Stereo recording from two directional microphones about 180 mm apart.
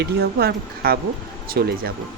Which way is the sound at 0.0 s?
60° right (ahead or behind).